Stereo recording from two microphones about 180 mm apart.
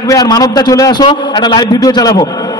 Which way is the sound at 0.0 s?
20° left (ahead or behind).